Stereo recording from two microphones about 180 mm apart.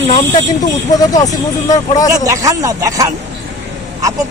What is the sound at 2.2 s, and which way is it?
Speech, 20° right (ahead or behind).